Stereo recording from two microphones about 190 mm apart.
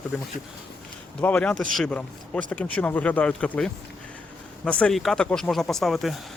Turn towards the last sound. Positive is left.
turn(degrees=0)  # may be behind; listen again after turning